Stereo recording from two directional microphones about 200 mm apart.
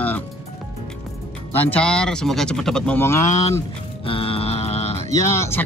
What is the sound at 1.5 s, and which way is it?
Speech, 5° left (ahead or behind).